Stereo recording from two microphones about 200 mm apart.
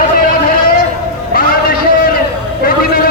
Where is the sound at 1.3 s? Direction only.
45° left (ahead or behind).